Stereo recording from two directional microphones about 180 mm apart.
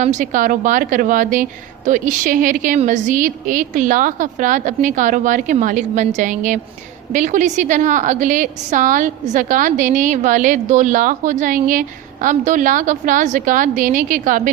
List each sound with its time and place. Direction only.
0.0 s a woman's voice: 45° right (ahead or behind)